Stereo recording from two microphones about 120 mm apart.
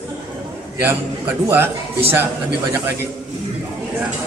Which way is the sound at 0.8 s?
15° right (ahead or behind).